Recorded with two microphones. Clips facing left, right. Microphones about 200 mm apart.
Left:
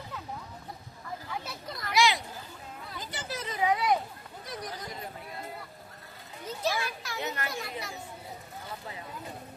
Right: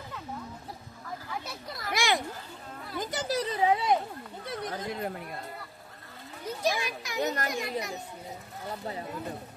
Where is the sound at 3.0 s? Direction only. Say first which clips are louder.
Right 9 dB; 40° right (ahead or behind).